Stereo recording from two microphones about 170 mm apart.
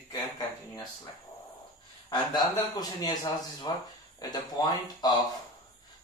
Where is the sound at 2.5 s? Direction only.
20° left (ahead or behind).